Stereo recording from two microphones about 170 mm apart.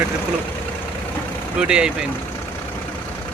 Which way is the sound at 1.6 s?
5° right (ahead or behind).